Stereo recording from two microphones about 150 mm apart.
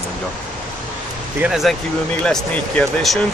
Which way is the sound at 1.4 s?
Centre (ahead or behind).